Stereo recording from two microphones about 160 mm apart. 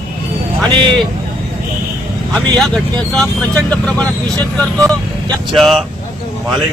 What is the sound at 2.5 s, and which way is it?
Speech, centre (ahead or behind).